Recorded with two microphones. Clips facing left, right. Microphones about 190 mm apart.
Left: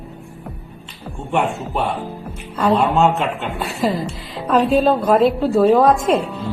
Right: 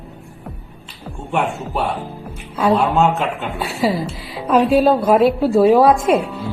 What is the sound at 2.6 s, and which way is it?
A man's voice, centre (ahead or behind).